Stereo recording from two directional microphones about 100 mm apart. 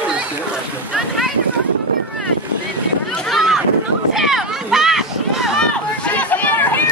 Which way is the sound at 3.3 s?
5° right (ahead or behind).